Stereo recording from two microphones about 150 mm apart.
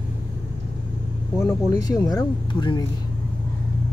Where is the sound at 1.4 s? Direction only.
20° left (ahead or behind).